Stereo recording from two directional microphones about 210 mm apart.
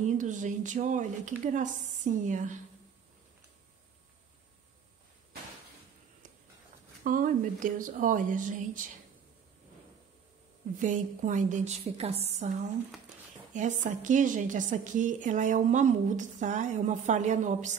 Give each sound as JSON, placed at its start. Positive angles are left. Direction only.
{"t": 0.0, "sound": "a woman's voice", "side_deg": -35}
{"t": 7.1, "sound": "a woman's voice", "side_deg": -40}
{"t": 10.8, "sound": "a woman's voice", "side_deg": -35}